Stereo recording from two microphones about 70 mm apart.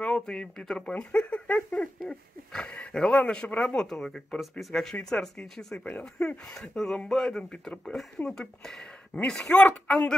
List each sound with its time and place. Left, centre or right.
0.0 s speech: centre
2.0 s speech: centre
5.9 s speech: centre
7.8 s speech: centre